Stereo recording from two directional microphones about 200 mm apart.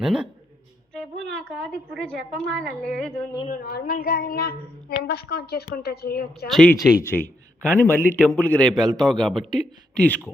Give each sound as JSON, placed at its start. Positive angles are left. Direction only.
{"t": 0.0, "sound": "a woman's voice", "side_deg": -5}
{"t": 3.5, "sound": "speech", "side_deg": 50}
{"t": 6.5, "sound": "a woman's voice", "side_deg": 0}